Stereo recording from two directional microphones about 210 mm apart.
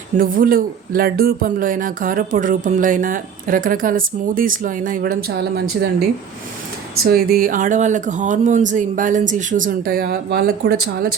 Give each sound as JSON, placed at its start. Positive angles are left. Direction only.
{"t": 0.2, "sound": "speech", "side_deg": -40}
{"t": 7.1, "sound": "speech", "side_deg": -45}